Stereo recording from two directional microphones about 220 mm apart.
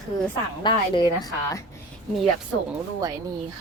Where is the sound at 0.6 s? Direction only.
20° left (ahead or behind).